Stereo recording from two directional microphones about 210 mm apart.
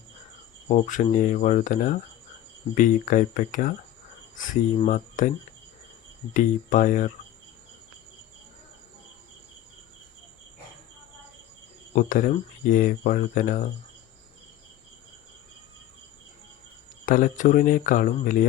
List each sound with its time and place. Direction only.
0.7 s speech: 35° left (ahead or behind)
4.9 s speech: 40° left (ahead or behind)
6.3 s speech: 40° left (ahead or behind)
11.9 s speech: 40° left (ahead or behind)
17.1 s speech: 40° left (ahead or behind)